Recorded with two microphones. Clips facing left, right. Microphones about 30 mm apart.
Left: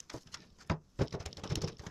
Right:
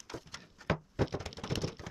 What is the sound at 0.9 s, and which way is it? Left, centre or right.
Thunk, centre.